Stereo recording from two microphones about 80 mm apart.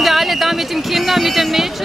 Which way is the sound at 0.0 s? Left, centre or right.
Centre.